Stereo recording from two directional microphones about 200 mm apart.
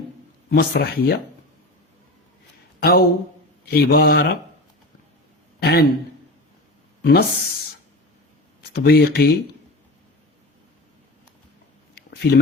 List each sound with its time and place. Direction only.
0.5 s speech: 50° left (ahead or behind)
2.8 s speech: 50° left (ahead or behind)
5.5 s a man's voice: 50° left (ahead or behind)
7.0 s speech: 50° left (ahead or behind)
8.7 s speech: 55° left (ahead or behind)
11.9 s a sound: 50° left (ahead or behind)